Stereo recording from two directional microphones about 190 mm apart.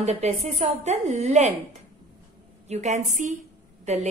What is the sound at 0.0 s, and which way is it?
Speech, 35° right (ahead or behind).